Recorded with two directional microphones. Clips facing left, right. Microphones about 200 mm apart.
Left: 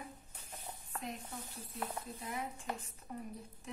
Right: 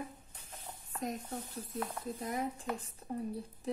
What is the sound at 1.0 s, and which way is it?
A woman's voice, 40° right (ahead or behind).